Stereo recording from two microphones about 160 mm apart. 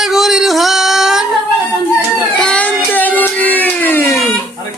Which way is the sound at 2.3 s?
5° left (ahead or behind).